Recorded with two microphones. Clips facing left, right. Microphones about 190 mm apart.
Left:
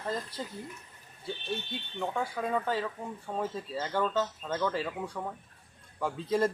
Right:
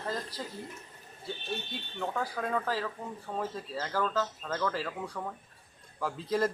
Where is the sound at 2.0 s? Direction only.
5° left (ahead or behind).